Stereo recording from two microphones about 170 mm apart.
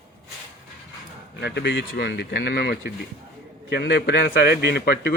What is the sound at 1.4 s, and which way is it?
Speech, 85° left.